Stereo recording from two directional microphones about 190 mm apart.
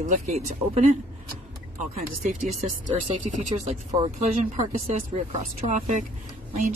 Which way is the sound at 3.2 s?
40° right (ahead or behind).